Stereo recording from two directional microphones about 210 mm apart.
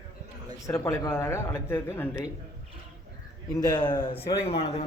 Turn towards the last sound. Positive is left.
turn(degrees=30)  # may be behind; listen again after turning